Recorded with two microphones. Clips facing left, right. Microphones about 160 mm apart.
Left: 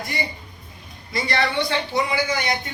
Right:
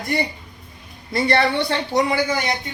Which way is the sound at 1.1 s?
60° right (ahead or behind).